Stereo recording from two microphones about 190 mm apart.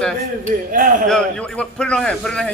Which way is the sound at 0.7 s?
45° right (ahead or behind).